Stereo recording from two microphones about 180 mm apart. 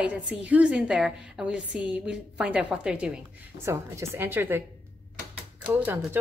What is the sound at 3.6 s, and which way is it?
A woman's voice, 15° right (ahead or behind).